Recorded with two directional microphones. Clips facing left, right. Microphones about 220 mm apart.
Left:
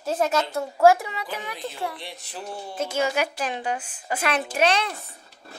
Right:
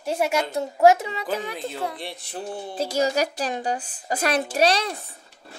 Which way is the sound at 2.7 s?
35° right (ahead or behind).